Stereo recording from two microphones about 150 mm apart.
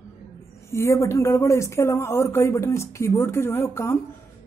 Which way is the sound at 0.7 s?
20° left (ahead or behind).